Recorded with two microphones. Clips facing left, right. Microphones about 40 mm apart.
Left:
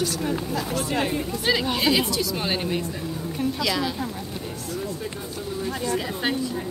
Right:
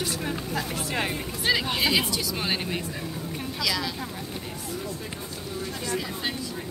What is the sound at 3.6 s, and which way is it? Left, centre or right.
Speech, centre.